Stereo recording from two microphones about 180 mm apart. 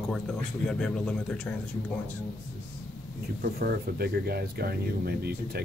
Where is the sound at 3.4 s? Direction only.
60° right (ahead or behind).